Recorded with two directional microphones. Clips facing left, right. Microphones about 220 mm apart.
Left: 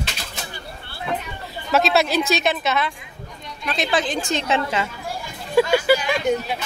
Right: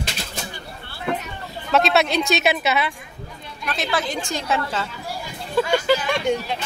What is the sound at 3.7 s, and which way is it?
A woman's voice, 15° left (ahead or behind).